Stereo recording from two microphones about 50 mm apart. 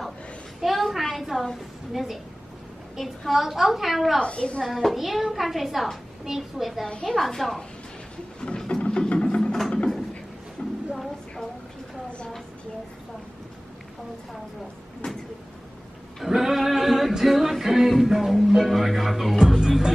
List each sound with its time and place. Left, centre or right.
0.6 s a sound: centre
3.0 s a woman's voice: centre
4.2 s a woman's voice: left
4.6 s a woman's voice: centre
8.4 s a sound: centre
10.6 s a sound: left
16.3 s singing: centre
17.2 s speech: centre
19.6 s music: centre